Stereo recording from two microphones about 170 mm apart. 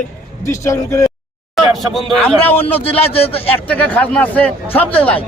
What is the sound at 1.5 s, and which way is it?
A man's voice, centre (ahead or behind).